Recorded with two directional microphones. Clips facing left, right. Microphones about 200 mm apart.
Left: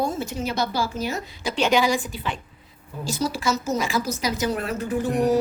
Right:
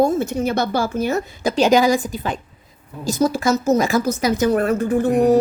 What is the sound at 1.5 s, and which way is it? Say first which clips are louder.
A man's voice: right 6 dB; 40° right (ahead or behind).